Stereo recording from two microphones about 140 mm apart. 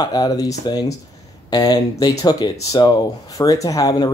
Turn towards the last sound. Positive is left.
turn(degrees=25)  # may be behind; listen again after turning